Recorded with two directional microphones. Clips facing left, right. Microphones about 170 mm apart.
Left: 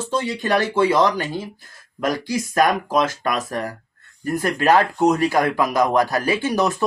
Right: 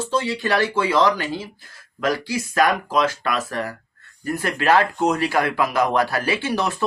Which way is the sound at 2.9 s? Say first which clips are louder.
Left 1 dB; 45° left (ahead or behind).